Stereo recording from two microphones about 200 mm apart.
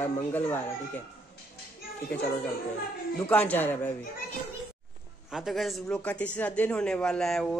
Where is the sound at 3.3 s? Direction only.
10° left (ahead or behind).